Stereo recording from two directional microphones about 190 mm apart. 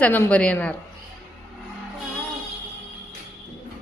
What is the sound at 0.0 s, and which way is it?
Speech, 10° left (ahead or behind).